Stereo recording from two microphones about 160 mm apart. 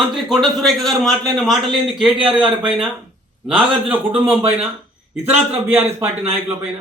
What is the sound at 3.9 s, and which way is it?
A man's voice, 10° right (ahead or behind).